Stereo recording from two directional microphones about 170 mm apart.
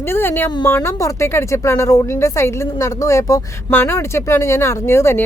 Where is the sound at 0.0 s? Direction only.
15° left (ahead or behind).